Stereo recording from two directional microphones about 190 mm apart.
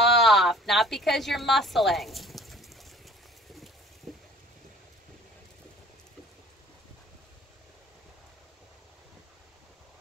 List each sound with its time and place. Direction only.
0.0 s speech: centre (ahead or behind)
4.1 s rain: centre (ahead or behind)